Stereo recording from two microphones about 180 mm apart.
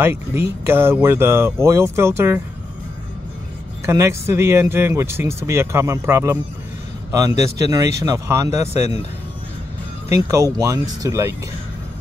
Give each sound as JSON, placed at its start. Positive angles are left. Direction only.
{"t": 0.0, "sound": "speech", "side_deg": -15}
{"t": 3.8, "sound": "speech", "side_deg": -15}
{"t": 10.0, "sound": "speech", "side_deg": -15}